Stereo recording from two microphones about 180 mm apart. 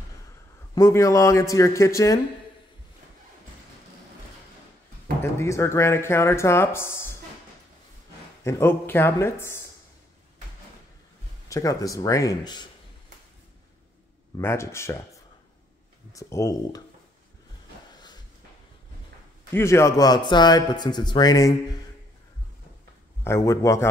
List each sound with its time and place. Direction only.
0.7 s speech: 15° left (ahead or behind)
5.2 s speech: 15° left (ahead or behind)
8.5 s speech: 15° left (ahead or behind)
11.4 s a man's voice: 20° left (ahead or behind)
14.4 s speech: 15° left (ahead or behind)
16.1 s speech: 15° left (ahead or behind)
19.5 s a man's voice: 15° left (ahead or behind)
23.2 s speech: 15° left (ahead or behind)